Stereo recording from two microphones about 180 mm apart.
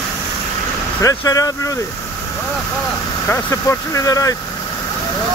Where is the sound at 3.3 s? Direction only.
15° left (ahead or behind).